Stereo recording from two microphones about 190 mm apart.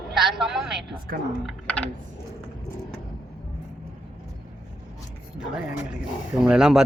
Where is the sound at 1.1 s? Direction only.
55° right (ahead or behind).